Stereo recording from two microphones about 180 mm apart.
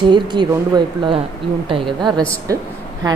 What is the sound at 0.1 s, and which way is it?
A woman's voice, 25° right (ahead or behind).